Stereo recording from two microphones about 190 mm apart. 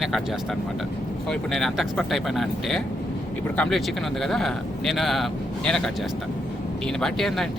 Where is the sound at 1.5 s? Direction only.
Centre (ahead or behind).